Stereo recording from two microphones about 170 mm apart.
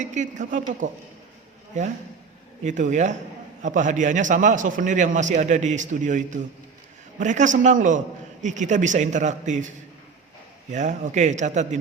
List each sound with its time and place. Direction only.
0.0 s a man's voice: 45° right (ahead or behind)
10.7 s a man's voice: 45° right (ahead or behind)